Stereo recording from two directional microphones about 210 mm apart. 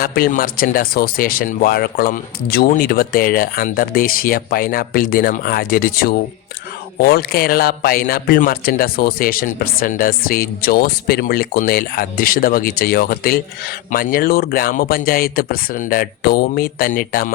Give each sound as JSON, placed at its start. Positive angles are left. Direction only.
{"t": 0.0, "sound": "speech", "side_deg": 45}